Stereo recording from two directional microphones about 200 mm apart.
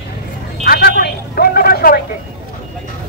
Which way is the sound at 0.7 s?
50° left (ahead or behind).